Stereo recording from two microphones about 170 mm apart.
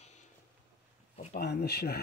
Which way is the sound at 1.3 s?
75° left (ahead or behind).